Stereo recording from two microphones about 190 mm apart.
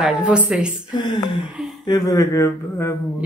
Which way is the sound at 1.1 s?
25° left (ahead or behind).